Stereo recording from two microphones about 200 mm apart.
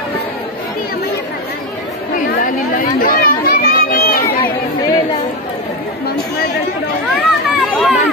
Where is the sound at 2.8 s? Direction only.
45° left (ahead or behind).